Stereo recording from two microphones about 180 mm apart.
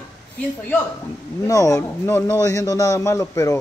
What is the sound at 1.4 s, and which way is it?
A man's voice, 20° left (ahead or behind).